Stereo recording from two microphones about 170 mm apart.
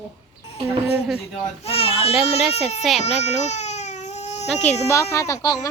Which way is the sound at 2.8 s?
Centre (ahead or behind).